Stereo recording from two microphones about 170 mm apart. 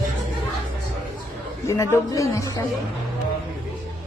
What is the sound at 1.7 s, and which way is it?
Speech, 15° left (ahead or behind).